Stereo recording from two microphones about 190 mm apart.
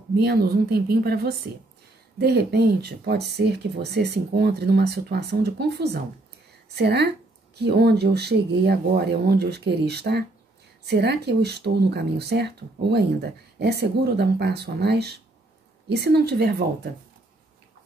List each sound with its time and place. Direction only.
0.1 s speech: 60° right (ahead or behind)